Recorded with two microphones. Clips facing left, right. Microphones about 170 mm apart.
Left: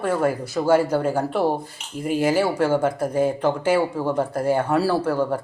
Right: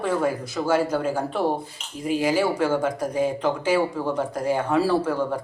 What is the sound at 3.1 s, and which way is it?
Speech, 55° left (ahead or behind).